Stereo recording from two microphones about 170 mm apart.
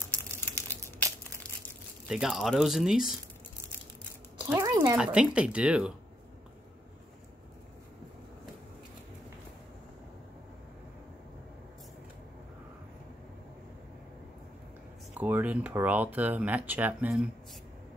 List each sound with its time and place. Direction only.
0.1 s crumpling: 10° left (ahead or behind)
2.0 s speech: 5° right (ahead or behind)
4.5 s a sound: 20° right (ahead or behind)
4.9 s speech: 5° right (ahead or behind)
15.1 s speech: 10° right (ahead or behind)